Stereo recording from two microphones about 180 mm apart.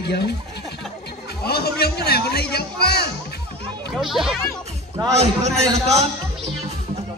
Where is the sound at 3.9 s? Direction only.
Centre (ahead or behind).